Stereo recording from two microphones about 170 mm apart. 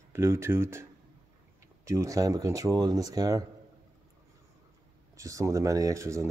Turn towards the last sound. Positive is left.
turn(degrees=-15)  # may be behind; listen again after turning